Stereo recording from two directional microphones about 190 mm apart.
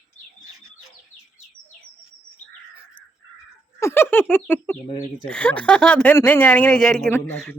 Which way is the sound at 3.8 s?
10° left (ahead or behind).